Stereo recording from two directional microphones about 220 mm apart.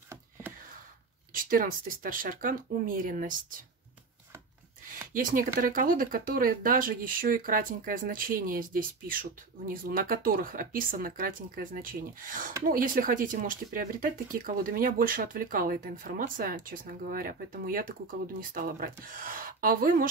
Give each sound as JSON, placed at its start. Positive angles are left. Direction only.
{"t": 1.3, "sound": "speech", "side_deg": -40}
{"t": 5.1, "sound": "speech", "side_deg": -40}